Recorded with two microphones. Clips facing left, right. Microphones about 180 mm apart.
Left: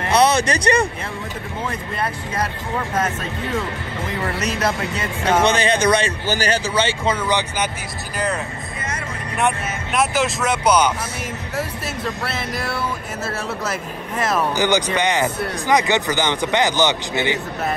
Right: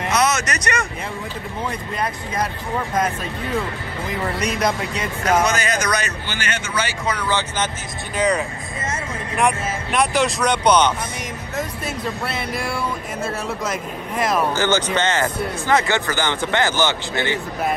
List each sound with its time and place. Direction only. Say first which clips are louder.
0.1 s a sound: left 5 dB; 30° left (ahead or behind)
4.9 s speech: even; 30° left (ahead or behind); by 7.7 s 15° left (ahead or behind)
8.2 s speech: right 4 dB; centre (ahead or behind)
9.9 s speech: even; centre (ahead or behind)
14.5 s speech: left 1 dB; 15° left (ahead or behind)